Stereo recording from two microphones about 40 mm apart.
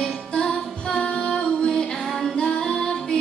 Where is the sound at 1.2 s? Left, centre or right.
Left.